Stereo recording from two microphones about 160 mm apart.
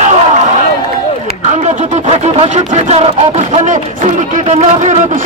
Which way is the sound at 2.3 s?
40° right (ahead or behind).